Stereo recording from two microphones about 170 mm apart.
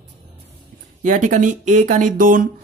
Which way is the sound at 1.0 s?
50° right (ahead or behind).